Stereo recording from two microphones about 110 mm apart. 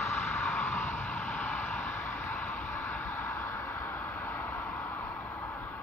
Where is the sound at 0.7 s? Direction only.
15° left (ahead or behind).